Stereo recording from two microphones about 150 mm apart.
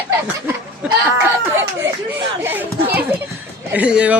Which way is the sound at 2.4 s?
15° right (ahead or behind).